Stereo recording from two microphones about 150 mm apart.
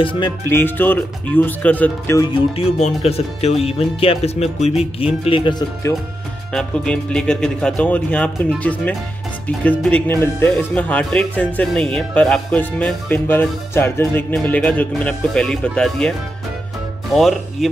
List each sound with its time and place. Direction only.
0.0 s speech: 35° left (ahead or behind)
0.5 s speech: 15° left (ahead or behind)
2.3 s speech: 40° left (ahead or behind)
6.5 s speech: 5° left (ahead or behind)
9.7 s speech: 10° left (ahead or behind)